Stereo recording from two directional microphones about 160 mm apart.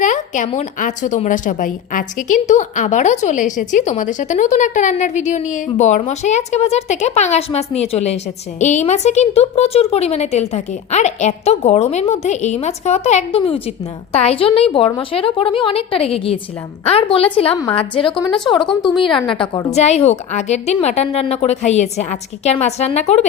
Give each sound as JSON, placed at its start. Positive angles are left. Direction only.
{"t": 0.0, "sound": "a woman's voice", "side_deg": 50}
{"t": 19.7, "sound": "a woman's voice", "side_deg": 45}